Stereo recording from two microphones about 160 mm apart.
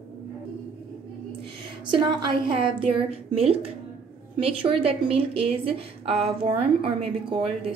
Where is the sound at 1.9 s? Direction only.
30° right (ahead or behind).